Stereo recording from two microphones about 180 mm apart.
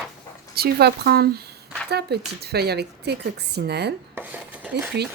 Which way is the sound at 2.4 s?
60° right (ahead or behind).